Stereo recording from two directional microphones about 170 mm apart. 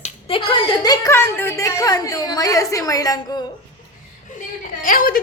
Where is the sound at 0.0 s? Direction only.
35° left (ahead or behind).